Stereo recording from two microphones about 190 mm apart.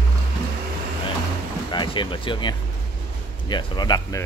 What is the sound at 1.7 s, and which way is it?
Speech, 25° left (ahead or behind).